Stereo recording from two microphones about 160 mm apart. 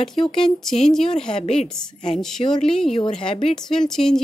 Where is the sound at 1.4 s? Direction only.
40° left (ahead or behind).